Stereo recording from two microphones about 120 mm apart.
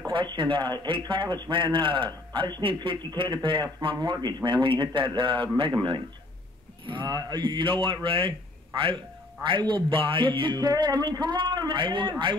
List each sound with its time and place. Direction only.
0.0 s a man's voice: 40° right (ahead or behind)